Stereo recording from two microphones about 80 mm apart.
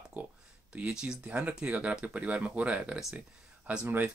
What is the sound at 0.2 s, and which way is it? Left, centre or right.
Speech, centre.